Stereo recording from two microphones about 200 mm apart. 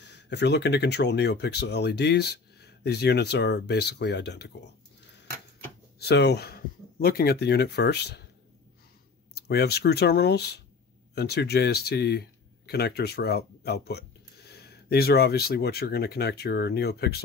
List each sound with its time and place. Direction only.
0.0 s speech: 60° left (ahead or behind)
5.9 s speech: 55° left (ahead or behind)
9.3 s speech: 55° left (ahead or behind)